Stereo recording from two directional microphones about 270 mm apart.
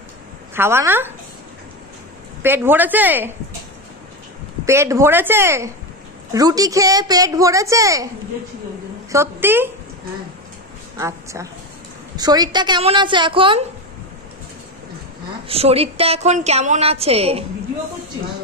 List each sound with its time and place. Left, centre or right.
0.6 s a woman's voice: centre
2.4 s a woman's voice: centre
4.6 s a woman's voice: centre
9.1 s a woman's voice: centre
11.0 s a woman's voice: centre
15.4 s a woman's voice: right